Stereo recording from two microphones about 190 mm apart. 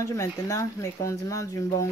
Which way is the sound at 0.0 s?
15° left (ahead or behind).